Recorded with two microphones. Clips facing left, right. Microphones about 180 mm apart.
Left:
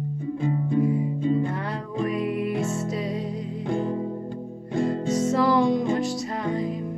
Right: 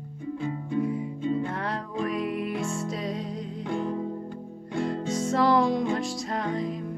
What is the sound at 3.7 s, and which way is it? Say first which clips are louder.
Music: left 3 dB; 35° left (ahead or behind).